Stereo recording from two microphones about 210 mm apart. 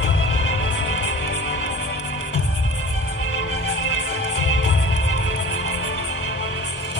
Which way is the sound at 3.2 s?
60° left (ahead or behind).